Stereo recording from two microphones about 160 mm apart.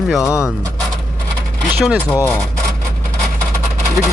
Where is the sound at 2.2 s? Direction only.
5° left (ahead or behind).